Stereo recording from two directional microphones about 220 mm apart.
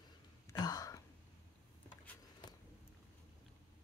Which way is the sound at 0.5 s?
15° left (ahead or behind).